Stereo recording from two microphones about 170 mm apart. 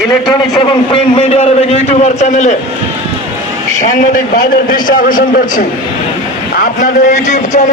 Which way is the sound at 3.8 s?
55° left (ahead or behind).